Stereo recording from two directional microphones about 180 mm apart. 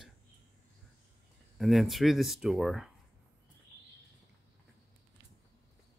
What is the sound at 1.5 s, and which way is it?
Speech, centre (ahead or behind).